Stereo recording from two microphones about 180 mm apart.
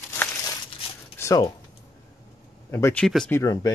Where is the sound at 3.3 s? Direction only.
20° left (ahead or behind).